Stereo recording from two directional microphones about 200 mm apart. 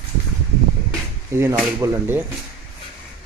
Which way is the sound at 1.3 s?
15° right (ahead or behind).